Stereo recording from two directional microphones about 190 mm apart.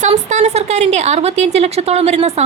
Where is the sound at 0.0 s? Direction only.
40° right (ahead or behind).